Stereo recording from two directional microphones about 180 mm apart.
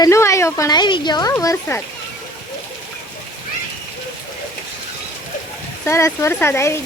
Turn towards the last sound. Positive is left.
turn(degrees=15)  # may be behind; listen again after turning